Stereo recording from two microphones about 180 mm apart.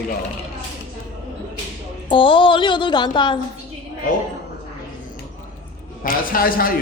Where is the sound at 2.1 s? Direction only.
30° left (ahead or behind).